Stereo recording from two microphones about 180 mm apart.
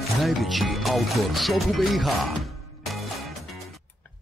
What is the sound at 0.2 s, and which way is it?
Speech, centre (ahead or behind).